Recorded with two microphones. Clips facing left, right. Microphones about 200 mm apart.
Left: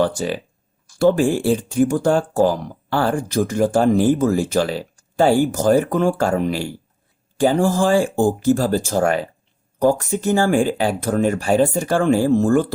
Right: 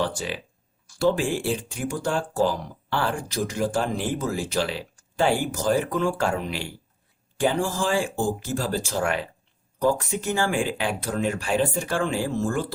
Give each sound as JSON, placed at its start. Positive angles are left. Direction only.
{"t": 0.0, "sound": "speech", "side_deg": 45}